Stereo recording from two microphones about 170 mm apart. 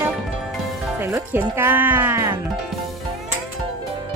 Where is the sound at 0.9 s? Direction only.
15° right (ahead or behind).